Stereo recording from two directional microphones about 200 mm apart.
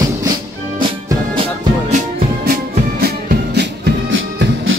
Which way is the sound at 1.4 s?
35° right (ahead or behind).